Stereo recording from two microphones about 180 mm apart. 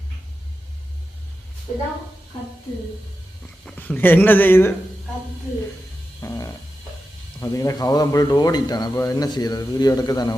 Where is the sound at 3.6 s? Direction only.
10° left (ahead or behind).